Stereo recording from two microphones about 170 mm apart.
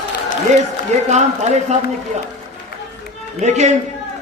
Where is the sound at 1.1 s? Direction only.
45° right (ahead or behind).